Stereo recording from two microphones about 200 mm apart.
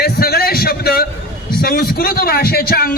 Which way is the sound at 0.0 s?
50° left (ahead or behind).